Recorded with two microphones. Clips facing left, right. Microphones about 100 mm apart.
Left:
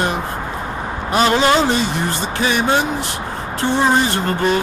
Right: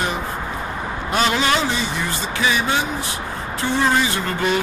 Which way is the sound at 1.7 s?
65° left (ahead or behind).